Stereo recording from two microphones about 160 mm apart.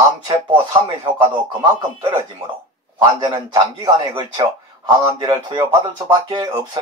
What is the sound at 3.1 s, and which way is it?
A man's voice, 25° right (ahead or behind).